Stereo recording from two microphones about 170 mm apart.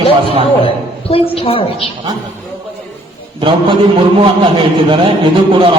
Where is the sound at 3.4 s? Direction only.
30° right (ahead or behind).